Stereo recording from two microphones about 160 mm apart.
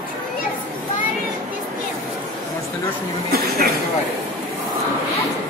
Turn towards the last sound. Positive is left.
turn(degrees=-70)  # may be behind; listen again after turning